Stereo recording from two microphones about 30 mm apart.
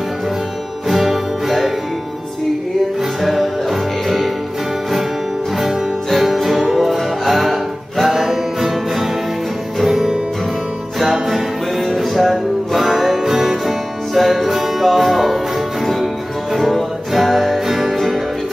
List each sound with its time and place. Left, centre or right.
0.8 s music: centre
3.2 s music: centre
6.1 s music: centre
11.2 s music: centre
14.1 s music: centre
17.1 s music: centre
17.9 s music: centre